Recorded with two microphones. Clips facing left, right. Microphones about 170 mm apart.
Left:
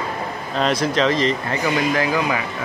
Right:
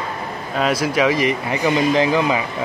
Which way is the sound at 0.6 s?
5° right (ahead or behind).